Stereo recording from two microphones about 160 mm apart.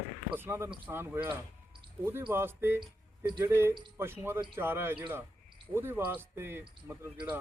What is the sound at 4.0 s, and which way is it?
Speech, 15° right (ahead or behind).